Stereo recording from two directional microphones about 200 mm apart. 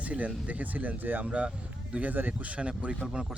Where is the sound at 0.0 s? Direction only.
5° right (ahead or behind).